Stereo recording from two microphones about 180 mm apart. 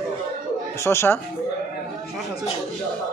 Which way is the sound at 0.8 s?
15° left (ahead or behind).